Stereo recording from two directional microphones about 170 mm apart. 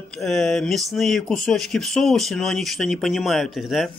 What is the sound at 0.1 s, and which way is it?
Speech, 5° left (ahead or behind).